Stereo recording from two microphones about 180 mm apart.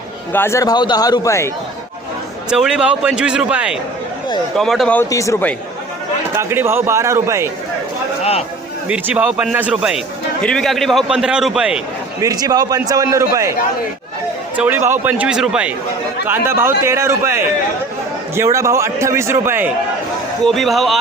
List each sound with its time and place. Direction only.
0.3 s a man's voice: 15° left (ahead or behind)
2.5 s a man's voice: 5° right (ahead or behind)
5.0 s speech: 15° left (ahead or behind)
6.3 s a man's voice: 15° right (ahead or behind)
8.2 s a man's voice: 35° left (ahead or behind)
8.9 s a man's voice: 10° right (ahead or behind)
12.2 s a man's voice: 20° right (ahead or behind)
14.5 s a man's voice: 10° right (ahead or behind)
20.4 s a man's voice: centre (ahead or behind)